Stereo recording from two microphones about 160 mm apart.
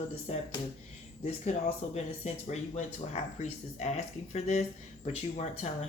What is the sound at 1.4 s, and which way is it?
Speech, 45° left (ahead or behind).